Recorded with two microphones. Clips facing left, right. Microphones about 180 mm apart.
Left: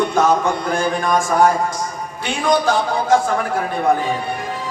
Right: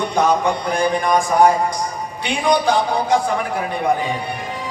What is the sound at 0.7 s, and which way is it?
Speech, 20° right (ahead or behind).